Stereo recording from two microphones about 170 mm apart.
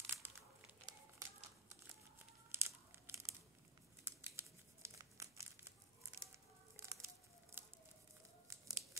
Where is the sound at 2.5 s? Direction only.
15° right (ahead or behind).